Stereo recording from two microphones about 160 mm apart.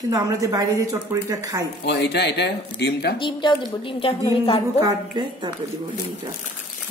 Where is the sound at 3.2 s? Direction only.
30° left (ahead or behind).